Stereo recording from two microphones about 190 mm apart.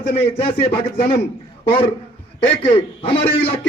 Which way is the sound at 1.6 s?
25° left (ahead or behind).